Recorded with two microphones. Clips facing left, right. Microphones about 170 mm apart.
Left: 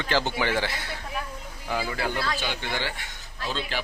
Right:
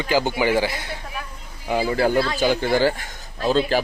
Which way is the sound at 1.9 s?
40° right (ahead or behind).